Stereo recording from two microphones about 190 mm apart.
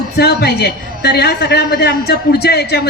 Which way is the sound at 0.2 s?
60° left (ahead or behind).